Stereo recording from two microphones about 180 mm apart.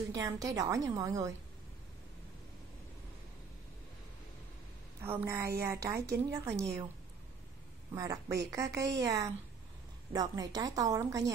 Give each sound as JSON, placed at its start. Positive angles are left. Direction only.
{"t": 0.1, "sound": "a woman's voice", "side_deg": -20}
{"t": 5.0, "sound": "a woman's voice", "side_deg": -15}
{"t": 7.9, "sound": "a woman's voice", "side_deg": -20}